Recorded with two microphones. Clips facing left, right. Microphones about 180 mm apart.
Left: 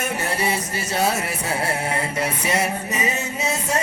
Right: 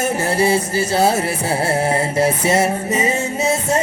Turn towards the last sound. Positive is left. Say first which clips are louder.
# right 6 dB
turn(degrees=-30)  # may be behind; listen again after turning